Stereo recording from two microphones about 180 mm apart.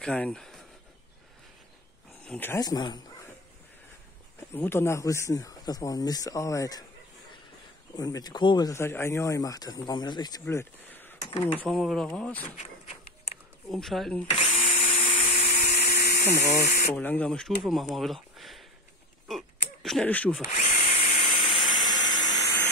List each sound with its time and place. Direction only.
0.0 s speech: 5° left (ahead or behind)
2.2 s speech: 10° left (ahead or behind)
4.6 s speech: 15° left (ahead or behind)
7.9 s speech: 20° left (ahead or behind)
10.4 s speech: 10° left (ahead or behind)
11.5 s speech: centre (ahead or behind)
13.7 s speech: centre (ahead or behind)
14.3 s drill: 35° left (ahead or behind)
15.3 s a sound: 45° left (ahead or behind)
16.6 s speech: 50° left (ahead or behind)
16.9 s speech: 10° left (ahead or behind)
19.2 s a sound: centre (ahead or behind)
20.4 s drill: 40° left (ahead or behind)
21.8 s a sound: 20° left (ahead or behind)